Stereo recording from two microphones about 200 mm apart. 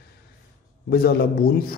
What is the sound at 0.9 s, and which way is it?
Speech, 50° left (ahead or behind).